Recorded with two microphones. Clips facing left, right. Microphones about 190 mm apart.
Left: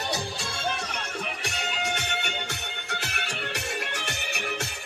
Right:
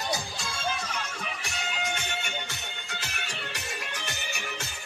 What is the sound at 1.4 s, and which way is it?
Music, 70° left (ahead or behind).